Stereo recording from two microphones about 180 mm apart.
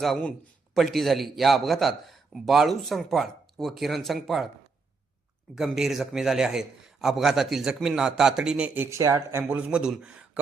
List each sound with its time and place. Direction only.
0.0 s a man's voice: 5° left (ahead or behind)
5.5 s a man's voice: centre (ahead or behind); by 9.4 s 20° right (ahead or behind)
9.4 s a man's voice: 5° right (ahead or behind)